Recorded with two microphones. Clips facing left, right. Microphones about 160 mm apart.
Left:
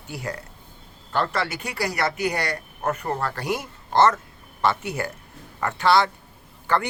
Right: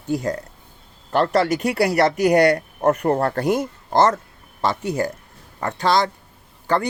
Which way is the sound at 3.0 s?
55° right (ahead or behind).